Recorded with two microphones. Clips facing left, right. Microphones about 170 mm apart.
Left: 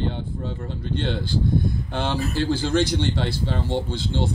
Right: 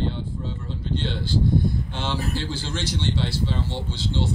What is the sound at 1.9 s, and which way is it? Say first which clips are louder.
Speech: left 3 dB; 55° left (ahead or behind).